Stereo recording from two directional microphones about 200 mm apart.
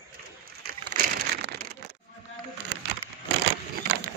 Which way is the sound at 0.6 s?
55° right (ahead or behind).